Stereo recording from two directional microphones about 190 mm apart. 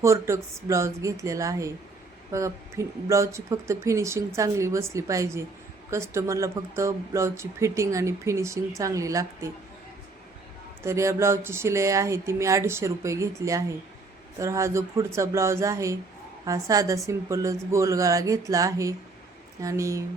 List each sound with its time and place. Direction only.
0.0 s speech: 15° right (ahead or behind)
10.8 s speech: 15° right (ahead or behind)